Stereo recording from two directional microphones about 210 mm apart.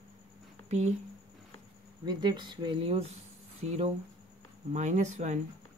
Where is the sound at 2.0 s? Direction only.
20° right (ahead or behind).